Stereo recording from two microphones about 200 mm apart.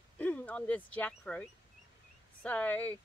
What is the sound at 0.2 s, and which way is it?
Speech, 5° left (ahead or behind).